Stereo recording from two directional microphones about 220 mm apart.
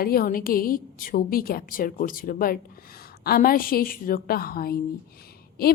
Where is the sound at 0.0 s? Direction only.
45° left (ahead or behind).